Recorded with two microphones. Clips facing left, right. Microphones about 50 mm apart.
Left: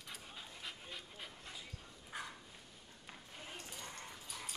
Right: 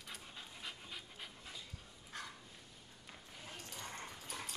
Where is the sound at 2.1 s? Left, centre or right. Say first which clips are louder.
Left 2 dB; centre.